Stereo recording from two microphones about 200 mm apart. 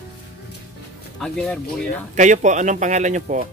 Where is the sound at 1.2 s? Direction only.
5° left (ahead or behind).